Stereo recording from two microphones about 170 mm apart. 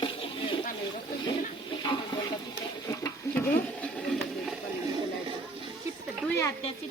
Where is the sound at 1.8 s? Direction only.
25° left (ahead or behind).